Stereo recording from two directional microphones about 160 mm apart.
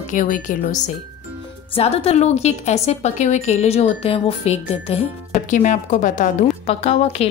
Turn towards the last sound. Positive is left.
turn(degrees=40)  # may be behind; listen again after turning